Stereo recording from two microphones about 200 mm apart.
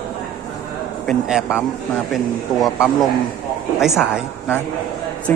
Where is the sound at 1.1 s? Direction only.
5° right (ahead or behind).